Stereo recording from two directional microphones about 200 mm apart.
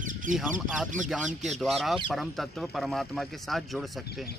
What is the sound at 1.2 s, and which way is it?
Speech, 35° right (ahead or behind).